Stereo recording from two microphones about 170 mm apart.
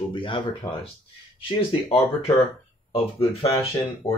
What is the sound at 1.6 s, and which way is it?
Speech, 35° left (ahead or behind).